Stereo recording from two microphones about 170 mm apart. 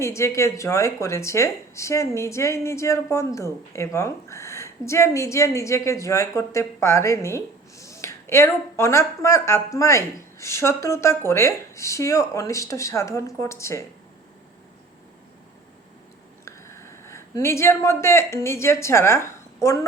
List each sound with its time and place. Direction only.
0.0 s speech: 15° left (ahead or behind)
16.5 s speech: 15° left (ahead or behind)